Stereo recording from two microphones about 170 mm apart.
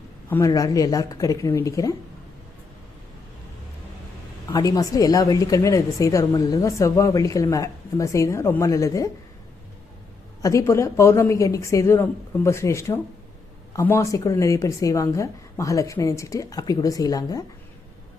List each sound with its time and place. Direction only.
0.3 s a woman's voice: 15° left (ahead or behind)
4.5 s a woman's voice: 20° left (ahead or behind)
10.4 s a woman's voice: 15° left (ahead or behind)